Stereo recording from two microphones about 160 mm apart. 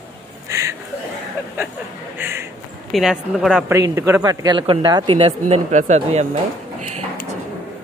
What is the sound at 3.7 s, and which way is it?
A man's voice, 20° right (ahead or behind).